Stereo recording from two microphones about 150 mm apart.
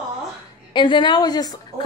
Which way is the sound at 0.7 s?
30° left (ahead or behind).